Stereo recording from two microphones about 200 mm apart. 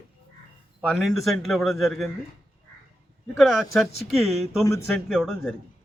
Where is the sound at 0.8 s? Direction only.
Centre (ahead or behind).